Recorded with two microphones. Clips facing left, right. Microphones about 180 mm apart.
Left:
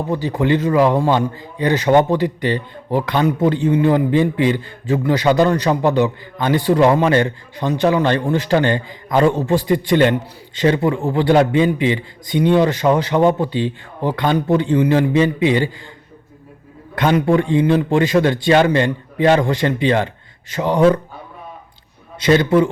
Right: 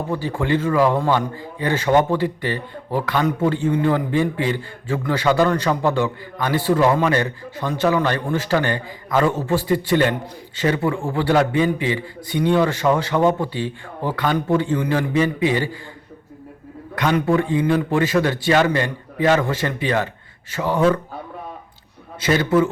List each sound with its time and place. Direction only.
0.1 s a man's voice: 20° left (ahead or behind)
17.2 s a man's voice: 25° left (ahead or behind)
22.3 s a man's voice: 25° left (ahead or behind)